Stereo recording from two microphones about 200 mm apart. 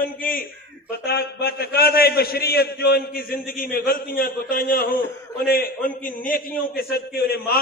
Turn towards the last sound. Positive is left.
turn(degrees=50)  # may be behind; listen again after turning